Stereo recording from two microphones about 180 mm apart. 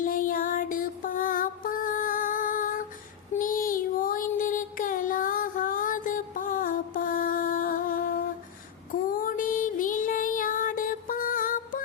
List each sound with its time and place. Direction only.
0.0 s music: 50° left (ahead or behind)
8.9 s child singing: 50° left (ahead or behind)